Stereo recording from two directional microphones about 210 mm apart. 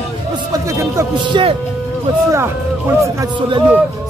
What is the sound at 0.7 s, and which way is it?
Speech, 15° right (ahead or behind).